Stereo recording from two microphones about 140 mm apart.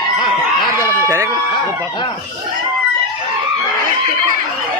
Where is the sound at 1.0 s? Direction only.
20° right (ahead or behind).